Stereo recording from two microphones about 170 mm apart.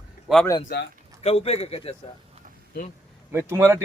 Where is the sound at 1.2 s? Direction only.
35° left (ahead or behind).